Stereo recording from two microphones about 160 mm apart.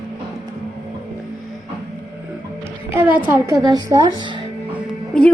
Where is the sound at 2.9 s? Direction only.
10° right (ahead or behind); by 4.3 s 30° right (ahead or behind).